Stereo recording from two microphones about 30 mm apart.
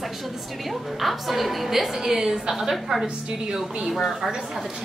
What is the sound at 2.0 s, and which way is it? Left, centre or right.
A woman's voice, centre.